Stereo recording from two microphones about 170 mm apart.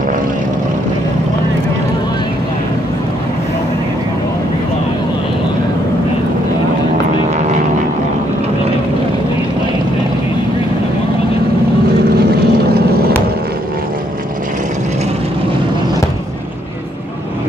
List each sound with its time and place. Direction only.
12.4 s boat: 70° right (ahead or behind)